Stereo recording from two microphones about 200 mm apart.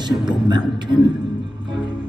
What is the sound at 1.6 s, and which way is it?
Music, 25° right (ahead or behind).